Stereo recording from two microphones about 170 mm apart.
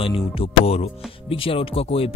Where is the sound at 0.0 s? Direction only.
35° left (ahead or behind).